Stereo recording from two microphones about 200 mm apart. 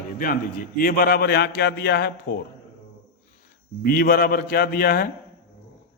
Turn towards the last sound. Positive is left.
turn(degrees=45)  # may be behind; listen again after turning